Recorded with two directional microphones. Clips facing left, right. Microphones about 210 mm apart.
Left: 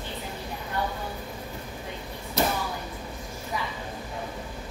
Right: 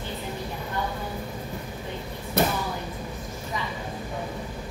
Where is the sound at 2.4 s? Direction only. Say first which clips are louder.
Right 2 dB; 55° right (ahead or behind).